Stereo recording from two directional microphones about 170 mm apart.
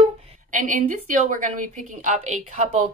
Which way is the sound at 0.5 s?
50° right (ahead or behind).